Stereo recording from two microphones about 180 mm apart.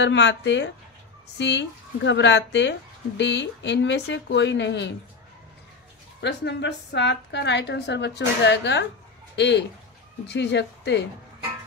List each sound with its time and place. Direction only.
0.0 s speech: 80° left
6.2 s a woman's voice: 70° left (ahead or behind)